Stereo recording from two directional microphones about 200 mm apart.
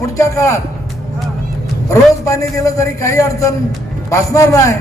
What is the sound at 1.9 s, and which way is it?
Speech, 15° left (ahead or behind).